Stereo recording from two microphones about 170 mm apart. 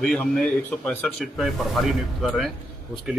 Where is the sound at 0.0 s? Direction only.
5° left (ahead or behind).